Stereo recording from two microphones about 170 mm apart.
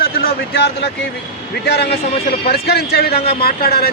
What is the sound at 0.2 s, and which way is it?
Speech, 65° left (ahead or behind).